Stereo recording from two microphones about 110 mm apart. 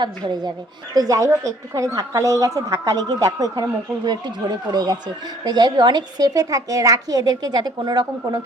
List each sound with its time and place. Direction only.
0.0 s a woman's voice: 40° right (ahead or behind)